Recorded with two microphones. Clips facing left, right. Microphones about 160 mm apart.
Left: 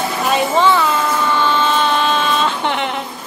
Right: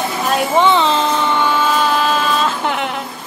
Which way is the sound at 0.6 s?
20° right (ahead or behind).